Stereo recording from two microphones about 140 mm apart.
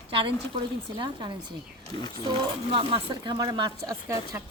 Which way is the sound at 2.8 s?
40° right (ahead or behind).